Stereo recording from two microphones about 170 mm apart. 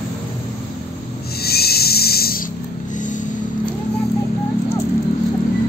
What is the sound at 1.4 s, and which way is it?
Owl, 65° left (ahead or behind).